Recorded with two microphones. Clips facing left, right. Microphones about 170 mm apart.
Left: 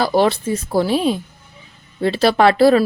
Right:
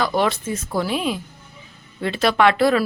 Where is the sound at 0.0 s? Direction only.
35° left (ahead or behind).